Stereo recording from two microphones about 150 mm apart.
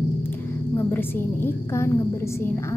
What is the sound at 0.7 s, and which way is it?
A woman's voice, 15° left (ahead or behind).